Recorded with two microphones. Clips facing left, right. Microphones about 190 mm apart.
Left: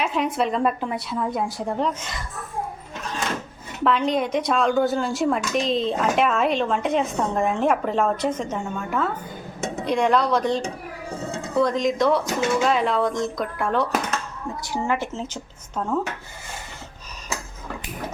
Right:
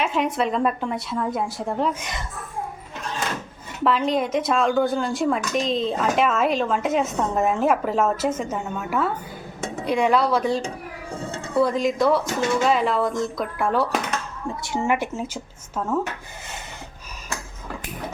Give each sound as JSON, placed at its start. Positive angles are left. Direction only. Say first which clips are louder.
{"t": 0.0, "sound": "speech", "louder": "even", "side_deg": 0}
{"t": 2.0, "sound": "speech", "louder": "right 2 dB", "side_deg": -15}
{"t": 3.8, "sound": "speech", "louder": "even", "side_deg": 0}
{"t": 14.7, "sound": "speech", "louder": "right 2 dB", "side_deg": -20}